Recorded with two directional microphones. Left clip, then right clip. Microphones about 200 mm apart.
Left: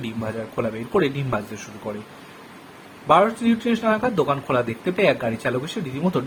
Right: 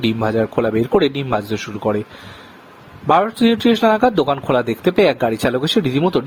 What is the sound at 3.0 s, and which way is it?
Speech, 50° right (ahead or behind).